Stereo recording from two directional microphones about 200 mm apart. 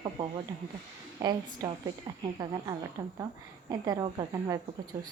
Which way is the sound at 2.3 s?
20° right (ahead or behind).